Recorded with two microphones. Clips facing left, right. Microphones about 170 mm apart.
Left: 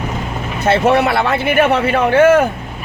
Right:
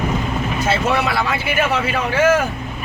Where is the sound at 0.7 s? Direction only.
60° left (ahead or behind).